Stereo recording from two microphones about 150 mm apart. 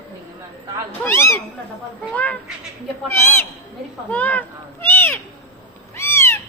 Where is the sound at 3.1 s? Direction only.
15° left (ahead or behind).